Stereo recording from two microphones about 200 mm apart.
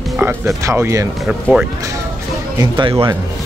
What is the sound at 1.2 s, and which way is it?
Speech, 5° right (ahead or behind).